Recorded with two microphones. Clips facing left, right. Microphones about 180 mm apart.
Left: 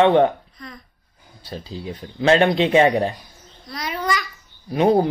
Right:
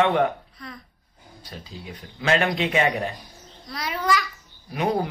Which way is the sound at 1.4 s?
30° left (ahead or behind).